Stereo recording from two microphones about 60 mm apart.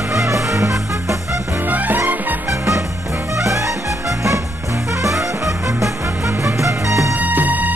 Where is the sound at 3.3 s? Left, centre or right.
Right.